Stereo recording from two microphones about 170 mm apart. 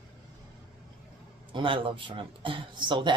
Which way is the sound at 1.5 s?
30° right (ahead or behind).